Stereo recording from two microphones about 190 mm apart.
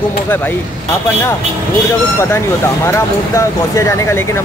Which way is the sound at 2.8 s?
15° left (ahead or behind).